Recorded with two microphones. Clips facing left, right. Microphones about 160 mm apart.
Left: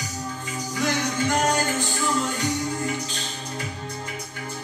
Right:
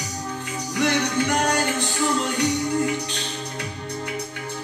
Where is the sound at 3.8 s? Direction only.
70° right (ahead or behind).